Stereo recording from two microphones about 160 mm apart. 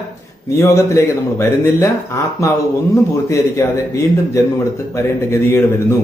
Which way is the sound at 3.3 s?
20° left (ahead or behind).